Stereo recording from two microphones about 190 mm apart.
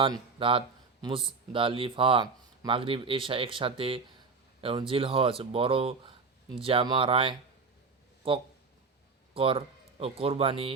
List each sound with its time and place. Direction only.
0.0 s speech: 30° right (ahead or behind)